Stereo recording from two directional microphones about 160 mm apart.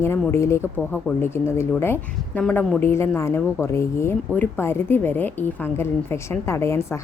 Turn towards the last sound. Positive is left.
turn(degrees=15)  # may be behind; listen again after turning